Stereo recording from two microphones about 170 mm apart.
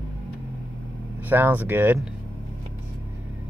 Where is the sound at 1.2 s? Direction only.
10° right (ahead or behind).